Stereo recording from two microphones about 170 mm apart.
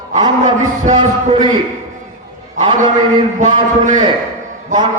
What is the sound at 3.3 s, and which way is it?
Speech, 45° right (ahead or behind).